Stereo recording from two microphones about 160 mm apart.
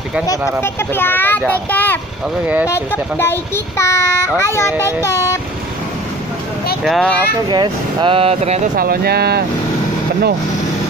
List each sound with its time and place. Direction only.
0.6 s child singing: 15° left (ahead or behind)
6.8 s speech: 5° left (ahead or behind)
7.4 s speech: 30° right (ahead or behind)
8.7 s speech: 70° right (ahead or behind)